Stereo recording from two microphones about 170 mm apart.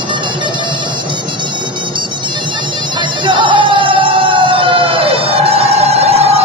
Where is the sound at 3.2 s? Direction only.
30° right (ahead or behind).